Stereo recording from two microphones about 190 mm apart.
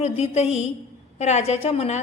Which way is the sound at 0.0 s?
35° left (ahead or behind).